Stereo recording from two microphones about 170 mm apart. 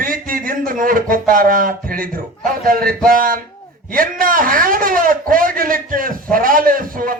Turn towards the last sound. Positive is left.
turn(degrees=-55)  # may be behind; listen again after turning